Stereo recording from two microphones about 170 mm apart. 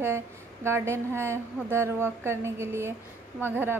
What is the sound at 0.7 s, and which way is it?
A woman's voice, 15° right (ahead or behind).